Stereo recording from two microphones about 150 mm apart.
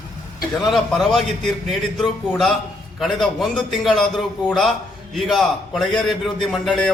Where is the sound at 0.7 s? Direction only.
Centre (ahead or behind).